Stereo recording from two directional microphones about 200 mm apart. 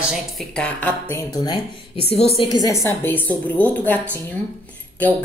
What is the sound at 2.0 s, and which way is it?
Speech, 30° left (ahead or behind).